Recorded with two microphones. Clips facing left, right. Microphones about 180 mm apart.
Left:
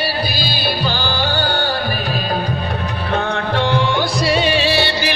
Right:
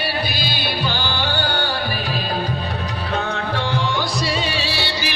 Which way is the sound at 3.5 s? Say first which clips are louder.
Left 6 dB; 65° left (ahead or behind).